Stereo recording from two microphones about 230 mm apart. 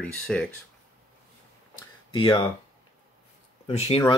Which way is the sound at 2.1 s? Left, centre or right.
Left.